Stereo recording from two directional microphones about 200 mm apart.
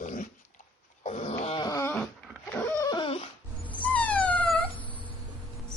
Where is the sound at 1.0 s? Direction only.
35° left (ahead or behind).